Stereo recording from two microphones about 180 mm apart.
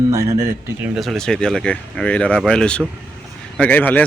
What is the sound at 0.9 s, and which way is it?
Speech, centre (ahead or behind).